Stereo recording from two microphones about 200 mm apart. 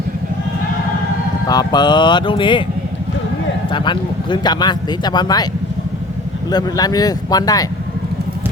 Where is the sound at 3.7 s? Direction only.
25° left (ahead or behind).